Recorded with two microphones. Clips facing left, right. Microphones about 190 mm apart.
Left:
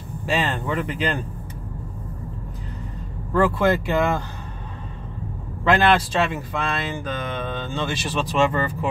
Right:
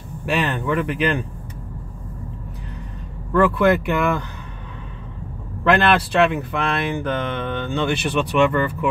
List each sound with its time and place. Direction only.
0.2 s speech: 65° right (ahead or behind)
3.3 s speech: 65° right (ahead or behind)
5.7 s speech: 60° right (ahead or behind)